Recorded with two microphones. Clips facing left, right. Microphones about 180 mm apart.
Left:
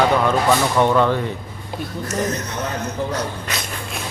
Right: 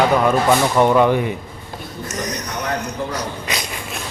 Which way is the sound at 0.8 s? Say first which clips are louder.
Right 2 dB; 10° right (ahead or behind).